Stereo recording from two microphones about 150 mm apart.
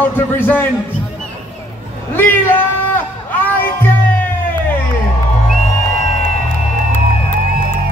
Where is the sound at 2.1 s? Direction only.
15° left (ahead or behind).